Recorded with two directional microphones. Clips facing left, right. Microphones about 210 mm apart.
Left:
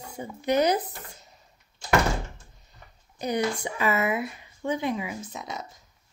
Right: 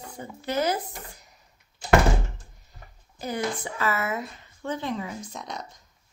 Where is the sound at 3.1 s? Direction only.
15° left (ahead or behind).